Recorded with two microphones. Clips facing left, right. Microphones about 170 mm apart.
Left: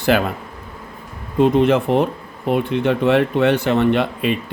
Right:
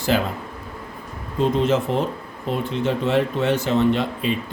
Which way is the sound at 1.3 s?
65° left (ahead or behind).